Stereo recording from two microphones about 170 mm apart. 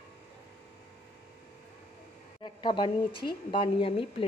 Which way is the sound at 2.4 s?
25° left (ahead or behind).